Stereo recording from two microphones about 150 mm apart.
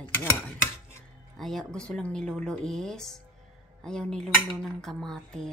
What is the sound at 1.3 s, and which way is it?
Speech, centre (ahead or behind).